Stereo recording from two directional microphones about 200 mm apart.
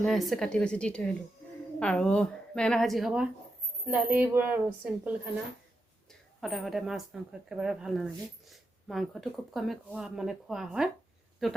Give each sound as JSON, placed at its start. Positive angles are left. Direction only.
{"t": 0.0, "sound": "speech", "side_deg": 0}